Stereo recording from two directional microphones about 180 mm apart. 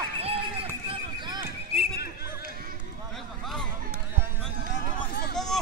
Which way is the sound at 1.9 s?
60° left (ahead or behind).